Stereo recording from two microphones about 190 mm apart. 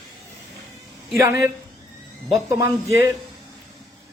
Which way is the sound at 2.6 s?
15° right (ahead or behind).